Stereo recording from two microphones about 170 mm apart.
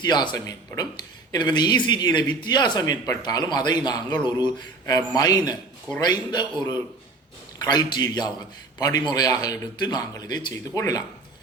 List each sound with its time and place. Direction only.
0.0 s speech: 25° left (ahead or behind)